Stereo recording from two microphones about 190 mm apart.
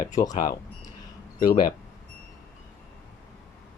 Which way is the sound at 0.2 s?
20° left (ahead or behind).